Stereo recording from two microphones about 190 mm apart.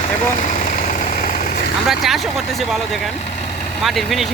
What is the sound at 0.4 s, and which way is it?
Engine, 40° left (ahead or behind).